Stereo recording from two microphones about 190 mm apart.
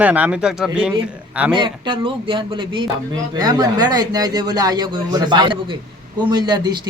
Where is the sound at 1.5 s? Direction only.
25° right (ahead or behind).